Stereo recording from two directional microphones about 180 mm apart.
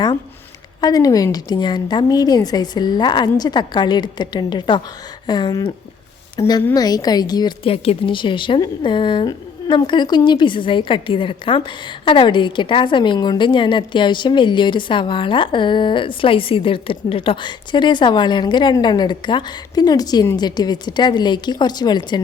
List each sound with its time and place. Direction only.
0.8 s a woman's voice: 20° left (ahead or behind)